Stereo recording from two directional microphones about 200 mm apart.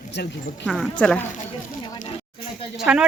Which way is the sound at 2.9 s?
10° right (ahead or behind).